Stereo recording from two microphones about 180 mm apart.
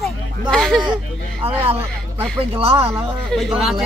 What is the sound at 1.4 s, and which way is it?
Speech, 30° right (ahead or behind).